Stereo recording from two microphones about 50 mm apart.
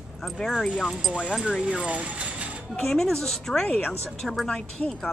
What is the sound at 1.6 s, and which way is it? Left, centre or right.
Speech, right.